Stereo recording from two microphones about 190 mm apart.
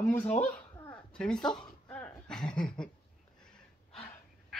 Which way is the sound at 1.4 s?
20° left (ahead or behind).